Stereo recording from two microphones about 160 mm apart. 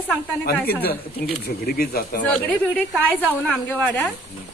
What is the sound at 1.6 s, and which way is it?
Speech, 70° left (ahead or behind).